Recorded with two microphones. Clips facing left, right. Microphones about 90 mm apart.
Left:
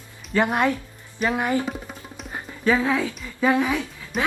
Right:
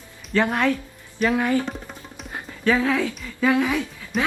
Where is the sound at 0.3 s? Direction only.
15° left (ahead or behind).